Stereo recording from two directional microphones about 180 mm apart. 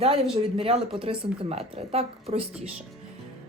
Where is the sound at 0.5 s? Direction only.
30° right (ahead or behind).